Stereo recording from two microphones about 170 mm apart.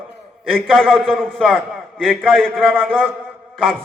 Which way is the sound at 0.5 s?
Centre (ahead or behind).